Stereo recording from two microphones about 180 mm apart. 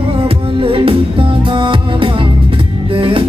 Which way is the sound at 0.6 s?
30° right (ahead or behind).